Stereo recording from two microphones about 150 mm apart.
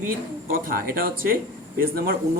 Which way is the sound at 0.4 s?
70° right (ahead or behind).